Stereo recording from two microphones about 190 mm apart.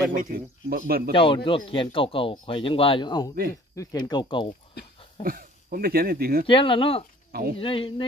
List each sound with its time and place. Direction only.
0.1 s speech: 50° right (ahead or behind)
1.1 s speech: 25° left (ahead or behind)
5.2 s speech: 50° right (ahead or behind)
6.4 s speech: 25° left (ahead or behind)